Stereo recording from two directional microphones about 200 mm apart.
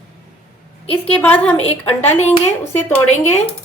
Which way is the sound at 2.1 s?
35° left (ahead or behind).